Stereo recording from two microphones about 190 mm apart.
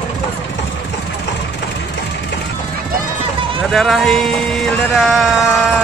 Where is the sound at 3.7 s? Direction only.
Centre (ahead or behind).